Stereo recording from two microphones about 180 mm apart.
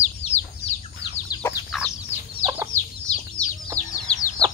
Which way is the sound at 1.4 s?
10° left (ahead or behind).